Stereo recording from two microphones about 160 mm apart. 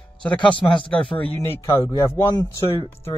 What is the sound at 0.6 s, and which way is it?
Speech, 20° left (ahead or behind).